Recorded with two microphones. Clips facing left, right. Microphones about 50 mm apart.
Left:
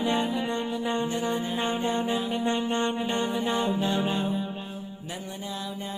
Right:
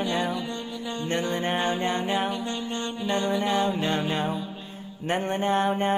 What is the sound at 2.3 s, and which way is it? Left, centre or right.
Mantra, left.